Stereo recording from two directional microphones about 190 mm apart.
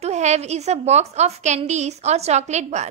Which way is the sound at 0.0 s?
35° right (ahead or behind).